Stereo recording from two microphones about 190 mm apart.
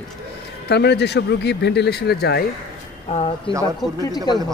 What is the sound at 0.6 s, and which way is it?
Speech, 60° left (ahead or behind).